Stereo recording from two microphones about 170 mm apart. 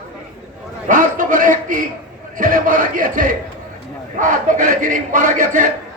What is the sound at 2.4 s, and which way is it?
A man's voice, 50° right (ahead or behind).